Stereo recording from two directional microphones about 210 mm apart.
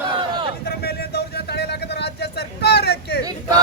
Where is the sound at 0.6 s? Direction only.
50° left (ahead or behind).